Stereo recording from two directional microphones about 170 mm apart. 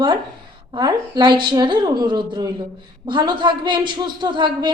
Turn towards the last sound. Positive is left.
turn(degrees=-25)  # may be behind; listen again after turning